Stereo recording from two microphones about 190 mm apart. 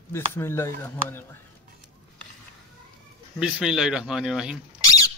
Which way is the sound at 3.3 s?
5° right (ahead or behind).